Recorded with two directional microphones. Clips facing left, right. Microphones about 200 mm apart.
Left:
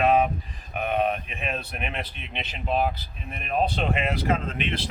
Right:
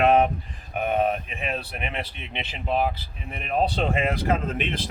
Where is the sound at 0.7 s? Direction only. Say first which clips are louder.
Right 2 dB; 45° right (ahead or behind).